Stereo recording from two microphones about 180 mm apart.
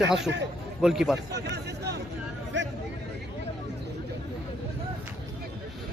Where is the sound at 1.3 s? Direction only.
70° right (ahead or behind).